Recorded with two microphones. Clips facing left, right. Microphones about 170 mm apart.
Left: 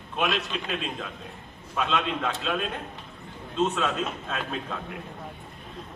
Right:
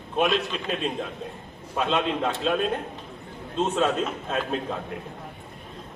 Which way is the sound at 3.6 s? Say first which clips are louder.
Right 4 dB; 30° right (ahead or behind).